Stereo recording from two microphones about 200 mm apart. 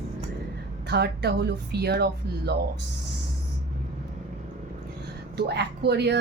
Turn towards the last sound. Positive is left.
turn(degrees=-55)  # may be behind; listen again after turning